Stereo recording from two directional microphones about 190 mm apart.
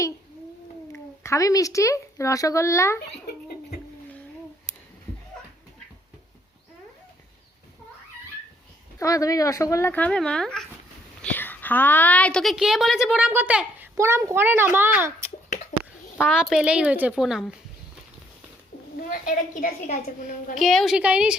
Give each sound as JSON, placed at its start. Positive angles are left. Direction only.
{"t": 0.9, "sound": "speech", "side_deg": 15}
{"t": 9.0, "sound": "a woman's voice", "side_deg": 20}
{"t": 16.1, "sound": "speech", "side_deg": 5}
{"t": 16.5, "sound": "speech", "side_deg": -5}
{"t": 19.0, "sound": "a woman's voice", "side_deg": 45}
{"t": 20.6, "sound": "speech", "side_deg": 0}